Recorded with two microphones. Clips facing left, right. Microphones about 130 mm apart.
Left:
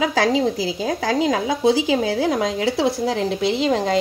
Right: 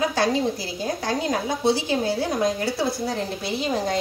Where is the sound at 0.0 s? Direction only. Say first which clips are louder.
Left 3 dB; 90° left.